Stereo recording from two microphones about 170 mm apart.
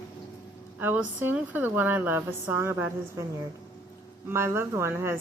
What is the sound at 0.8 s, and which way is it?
Speech, 10° right (ahead or behind).